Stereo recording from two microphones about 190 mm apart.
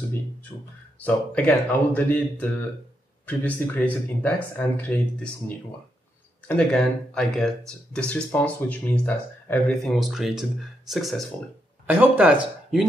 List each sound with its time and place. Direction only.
0.5 s speech: 25° left (ahead or behind)
0.9 s speech: 5° left (ahead or behind)
6.4 s speech: 5° left (ahead or behind)